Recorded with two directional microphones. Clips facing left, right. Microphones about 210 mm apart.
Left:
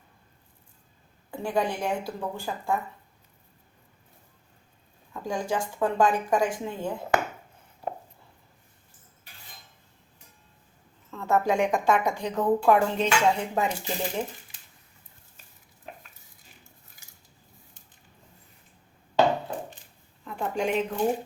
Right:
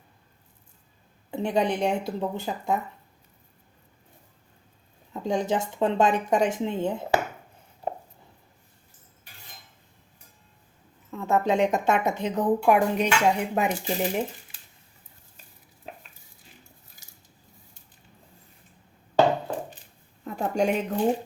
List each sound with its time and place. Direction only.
1.3 s a woman's voice: 20° right (ahead or behind)
5.1 s a woman's voice: 25° right (ahead or behind)
11.1 s a woman's voice: 15° right (ahead or behind)
20.2 s speech: 40° right (ahead or behind)